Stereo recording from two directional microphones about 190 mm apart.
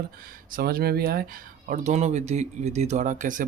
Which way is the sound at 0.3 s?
50° right (ahead or behind).